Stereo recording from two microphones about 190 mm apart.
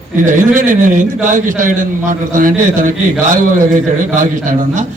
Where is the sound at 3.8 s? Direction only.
40° right (ahead or behind).